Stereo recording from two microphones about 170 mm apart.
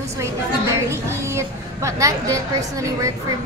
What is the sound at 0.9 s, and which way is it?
A woman's voice, 15° right (ahead or behind).